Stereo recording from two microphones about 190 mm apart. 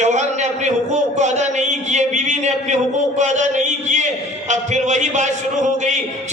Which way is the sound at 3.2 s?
40° right (ahead or behind).